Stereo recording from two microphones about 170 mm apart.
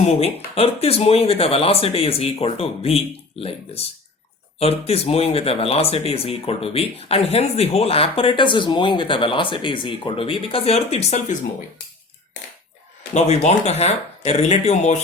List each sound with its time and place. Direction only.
0.0 s speech: 40° left (ahead or behind)
13.1 s speech: 40° left (ahead or behind)